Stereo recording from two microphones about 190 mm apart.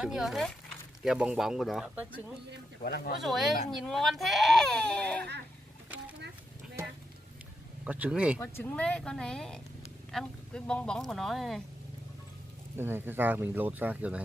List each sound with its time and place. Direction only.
0.0 s speech: 5° right (ahead or behind)
2.8 s speech: 55° left (ahead or behind)
3.2 s speech: centre (ahead or behind)
7.8 s speech: 5° right (ahead or behind)
8.4 s speech: 10° left (ahead or behind)
12.7 s speech: 10° right (ahead or behind)